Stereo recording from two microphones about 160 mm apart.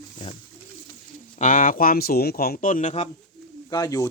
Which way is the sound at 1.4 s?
55° left (ahead or behind).